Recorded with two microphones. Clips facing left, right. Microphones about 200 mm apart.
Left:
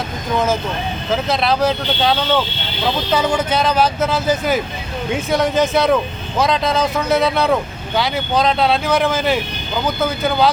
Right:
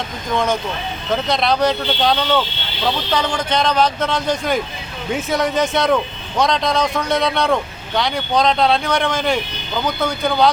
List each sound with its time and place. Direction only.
0.3 s speech: 5° left (ahead or behind)